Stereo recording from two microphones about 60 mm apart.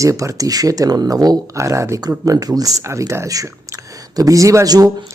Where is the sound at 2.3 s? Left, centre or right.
Right.